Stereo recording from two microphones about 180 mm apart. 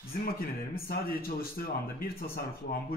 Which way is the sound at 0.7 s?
55° left (ahead or behind).